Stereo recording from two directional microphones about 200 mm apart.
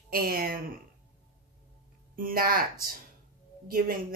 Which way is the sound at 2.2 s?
45° right (ahead or behind).